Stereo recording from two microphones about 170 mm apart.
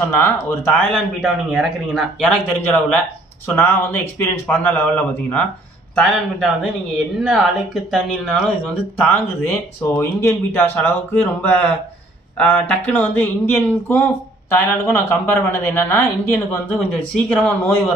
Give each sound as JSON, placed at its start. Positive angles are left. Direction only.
{"t": 0.0, "sound": "speech", "side_deg": 15}
{"t": 0.9, "sound": "speech", "side_deg": 0}
{"t": 9.0, "sound": "speech", "side_deg": 15}